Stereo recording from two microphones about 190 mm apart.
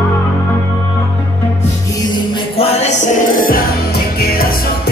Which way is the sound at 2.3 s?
30° left (ahead or behind).